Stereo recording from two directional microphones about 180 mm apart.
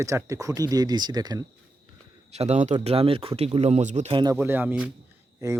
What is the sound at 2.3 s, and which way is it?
Speech, 35° right (ahead or behind).